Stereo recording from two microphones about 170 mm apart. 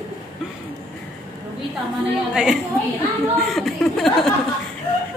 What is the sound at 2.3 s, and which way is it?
Speech, 5° right (ahead or behind).